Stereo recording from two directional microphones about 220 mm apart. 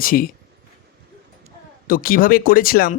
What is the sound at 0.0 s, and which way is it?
Speech, 40° left (ahead or behind).